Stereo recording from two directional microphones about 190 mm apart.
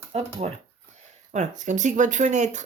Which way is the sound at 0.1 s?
35° right (ahead or behind).